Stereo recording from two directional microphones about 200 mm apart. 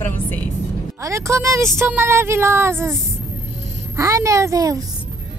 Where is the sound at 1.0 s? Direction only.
15° right (ahead or behind).